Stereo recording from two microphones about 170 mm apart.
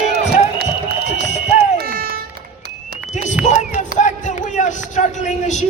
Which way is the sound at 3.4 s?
45° left (ahead or behind).